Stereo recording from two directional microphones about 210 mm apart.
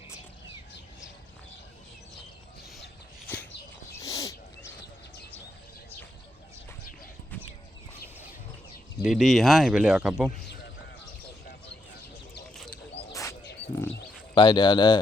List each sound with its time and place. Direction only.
2.7 s a sound: 5° left (ahead or behind)
4.0 s dog: 15° left (ahead or behind)
9.0 s speech: 5° right (ahead or behind)
14.3 s speech: 20° left (ahead or behind)